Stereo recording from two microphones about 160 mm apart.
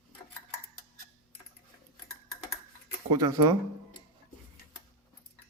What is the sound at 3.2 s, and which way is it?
Speech, 20° right (ahead or behind).